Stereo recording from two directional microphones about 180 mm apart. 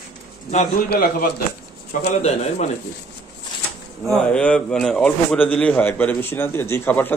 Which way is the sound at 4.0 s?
5° left (ahead or behind).